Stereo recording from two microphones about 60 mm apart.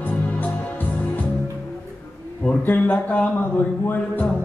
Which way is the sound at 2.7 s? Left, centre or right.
Left.